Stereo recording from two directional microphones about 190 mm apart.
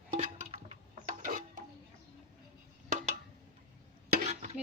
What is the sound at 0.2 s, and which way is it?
Music, 35° right (ahead or behind).